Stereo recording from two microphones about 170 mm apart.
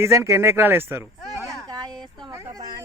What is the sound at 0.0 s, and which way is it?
Speech, 15° right (ahead or behind).